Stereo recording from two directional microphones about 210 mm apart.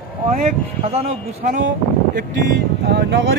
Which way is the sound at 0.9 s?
35° right (ahead or behind).